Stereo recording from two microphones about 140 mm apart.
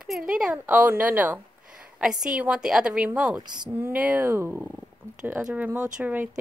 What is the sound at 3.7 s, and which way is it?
Speech, 15° right (ahead or behind).